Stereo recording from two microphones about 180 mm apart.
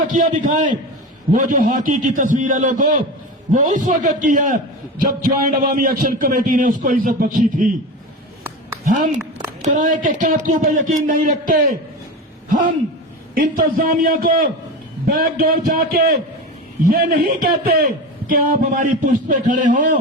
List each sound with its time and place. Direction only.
0.1 s a man's voice: 45° right (ahead or behind)
8.8 s a woman's voice: 45° right (ahead or behind)
13.7 s a man's voice: 55° right (ahead or behind)